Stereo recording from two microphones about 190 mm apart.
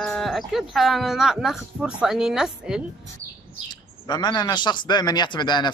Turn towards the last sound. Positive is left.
turn(degrees=25)  # may be behind; listen again after turning